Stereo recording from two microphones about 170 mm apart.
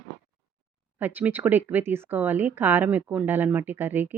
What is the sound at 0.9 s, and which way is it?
A woman's voice, 10° right (ahead or behind).